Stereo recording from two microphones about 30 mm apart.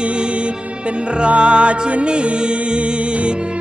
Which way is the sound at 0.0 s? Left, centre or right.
Right.